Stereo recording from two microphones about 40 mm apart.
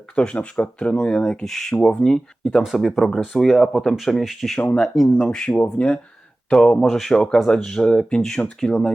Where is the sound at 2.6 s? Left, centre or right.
Centre.